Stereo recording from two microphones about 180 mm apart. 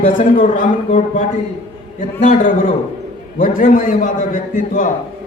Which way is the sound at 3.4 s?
50° left (ahead or behind).